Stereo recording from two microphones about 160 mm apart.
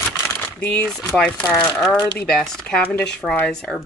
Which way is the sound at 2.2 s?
5° left (ahead or behind).